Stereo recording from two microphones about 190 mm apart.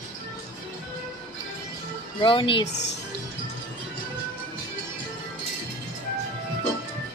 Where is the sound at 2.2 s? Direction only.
25° left (ahead or behind).